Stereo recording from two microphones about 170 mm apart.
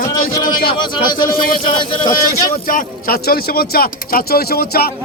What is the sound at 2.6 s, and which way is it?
A man's voice, 55° left (ahead or behind).